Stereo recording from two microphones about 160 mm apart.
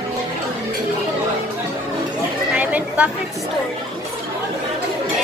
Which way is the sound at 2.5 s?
10° right (ahead or behind).